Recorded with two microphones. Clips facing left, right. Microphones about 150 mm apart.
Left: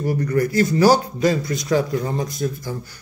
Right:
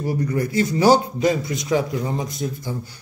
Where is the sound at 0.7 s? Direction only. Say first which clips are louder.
Right 1 dB; 25° right (ahead or behind).